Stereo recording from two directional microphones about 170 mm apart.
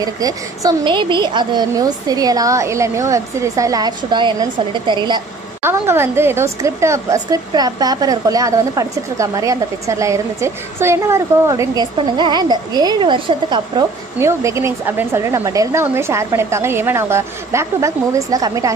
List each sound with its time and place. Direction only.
0.0 s a woman's voice: 20° right (ahead or behind)
5.6 s a woman's voice: 15° right (ahead or behind)